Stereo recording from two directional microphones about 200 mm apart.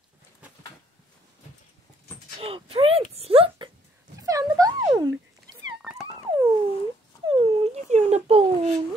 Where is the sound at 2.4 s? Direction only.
30° right (ahead or behind).